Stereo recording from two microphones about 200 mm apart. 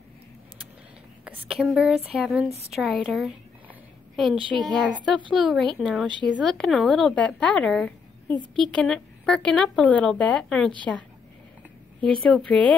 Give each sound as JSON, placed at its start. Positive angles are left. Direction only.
{"t": 1.2, "sound": "a woman's voice", "side_deg": -5}
{"t": 4.4, "sound": "speech", "side_deg": -25}
{"t": 5.3, "sound": "a woman's voice", "side_deg": 0}
{"t": 12.0, "sound": "a woman's voice", "side_deg": 5}